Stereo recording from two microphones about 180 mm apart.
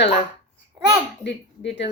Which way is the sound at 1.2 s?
75° left (ahead or behind).